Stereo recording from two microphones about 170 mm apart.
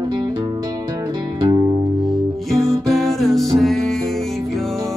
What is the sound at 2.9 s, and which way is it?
Music, centre (ahead or behind).